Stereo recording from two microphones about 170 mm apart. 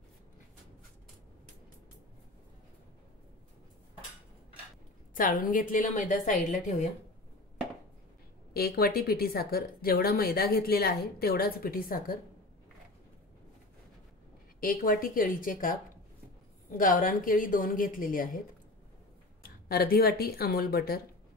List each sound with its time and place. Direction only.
5.1 s a woman's voice: 50° left (ahead or behind)
8.5 s speech: 65° left (ahead or behind)
14.6 s a woman's voice: 55° left (ahead or behind)
19.4 s speech: 65° left (ahead or behind)